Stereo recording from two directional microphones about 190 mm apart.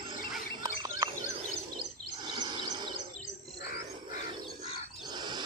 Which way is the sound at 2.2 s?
25° right (ahead or behind).